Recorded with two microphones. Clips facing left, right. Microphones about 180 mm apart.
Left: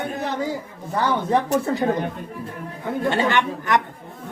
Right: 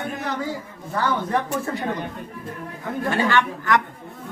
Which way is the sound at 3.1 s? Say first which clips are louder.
Even; 20° left (ahead or behind).